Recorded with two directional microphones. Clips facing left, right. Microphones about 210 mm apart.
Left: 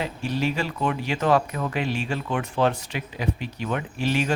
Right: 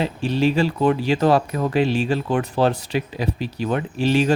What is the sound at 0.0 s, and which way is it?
Speech, 30° right (ahead or behind).